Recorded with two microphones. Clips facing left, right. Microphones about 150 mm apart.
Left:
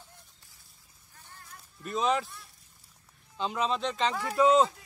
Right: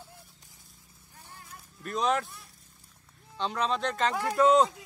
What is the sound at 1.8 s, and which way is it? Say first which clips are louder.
Speech: even; centre (ahead or behind).